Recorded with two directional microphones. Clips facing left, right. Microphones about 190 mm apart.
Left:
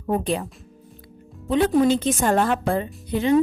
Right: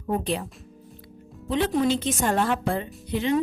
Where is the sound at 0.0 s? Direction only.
50° left (ahead or behind).